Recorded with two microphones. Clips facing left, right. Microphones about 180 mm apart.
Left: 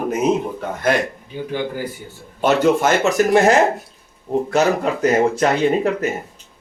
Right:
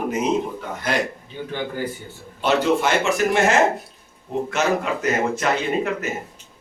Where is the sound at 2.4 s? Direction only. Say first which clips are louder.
Left 4 dB; 45° left (ahead or behind).